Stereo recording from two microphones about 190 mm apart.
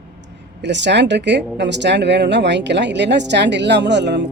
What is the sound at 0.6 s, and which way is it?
Speech, 65° right (ahead or behind).